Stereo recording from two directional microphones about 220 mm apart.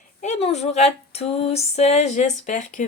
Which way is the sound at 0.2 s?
30° left (ahead or behind).